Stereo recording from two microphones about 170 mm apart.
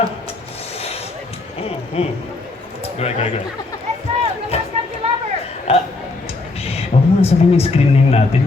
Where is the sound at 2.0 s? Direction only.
35° left (ahead or behind).